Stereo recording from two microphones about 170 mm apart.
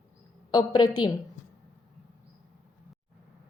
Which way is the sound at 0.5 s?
25° left (ahead or behind).